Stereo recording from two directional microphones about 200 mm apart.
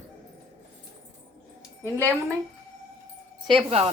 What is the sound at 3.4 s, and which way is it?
Speech, 25° right (ahead or behind).